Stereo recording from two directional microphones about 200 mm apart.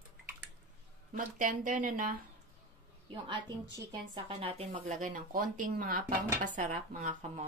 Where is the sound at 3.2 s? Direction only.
25° right (ahead or behind).